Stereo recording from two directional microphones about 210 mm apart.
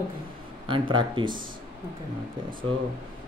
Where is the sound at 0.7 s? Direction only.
25° right (ahead or behind).